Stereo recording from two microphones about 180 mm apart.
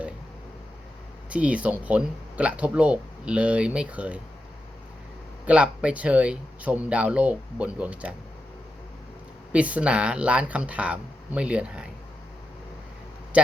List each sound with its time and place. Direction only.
1.3 s speech: 5° right (ahead or behind)
5.5 s speech: 5° right (ahead or behind)
9.5 s speech: 5° right (ahead or behind)
13.3 s speech: 5° right (ahead or behind)